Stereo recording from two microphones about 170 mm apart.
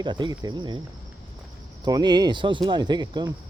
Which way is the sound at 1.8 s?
25° right (ahead or behind).